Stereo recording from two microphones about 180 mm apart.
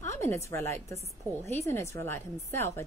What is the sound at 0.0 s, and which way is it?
A woman's voice, 15° left (ahead or behind).